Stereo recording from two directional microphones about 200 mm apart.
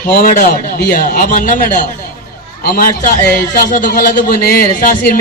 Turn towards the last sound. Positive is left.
turn(degrees=45)  # may be behind; listen again after turning